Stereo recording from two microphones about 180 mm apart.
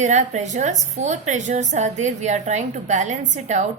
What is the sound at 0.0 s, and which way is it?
A woman's voice, 40° right (ahead or behind).